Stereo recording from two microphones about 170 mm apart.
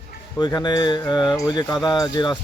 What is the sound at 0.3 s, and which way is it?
Speech, 25° left (ahead or behind).